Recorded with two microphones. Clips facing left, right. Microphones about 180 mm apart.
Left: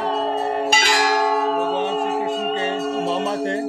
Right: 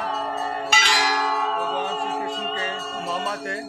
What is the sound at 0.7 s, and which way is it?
Church bell, 45° left (ahead or behind).